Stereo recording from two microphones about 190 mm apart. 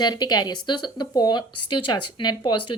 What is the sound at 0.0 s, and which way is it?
Speech, 20° left (ahead or behind).